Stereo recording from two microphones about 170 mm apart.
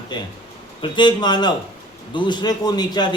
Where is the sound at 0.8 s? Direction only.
25° left (ahead or behind).